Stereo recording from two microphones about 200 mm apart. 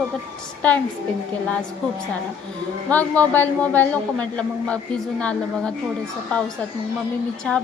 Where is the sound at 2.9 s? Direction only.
10° left (ahead or behind).